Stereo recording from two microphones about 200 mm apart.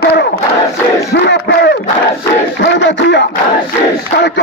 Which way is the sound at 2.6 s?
60° left (ahead or behind).